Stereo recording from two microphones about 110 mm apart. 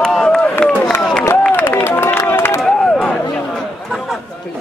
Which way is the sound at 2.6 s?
5° left (ahead or behind).